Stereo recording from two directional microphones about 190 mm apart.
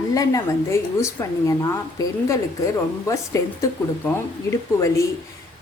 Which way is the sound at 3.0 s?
15° left (ahead or behind).